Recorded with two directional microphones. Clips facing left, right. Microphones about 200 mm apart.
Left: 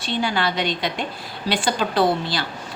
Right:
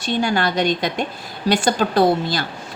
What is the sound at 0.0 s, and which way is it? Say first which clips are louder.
A woman's voice: right 3 dB; 45° right (ahead or behind).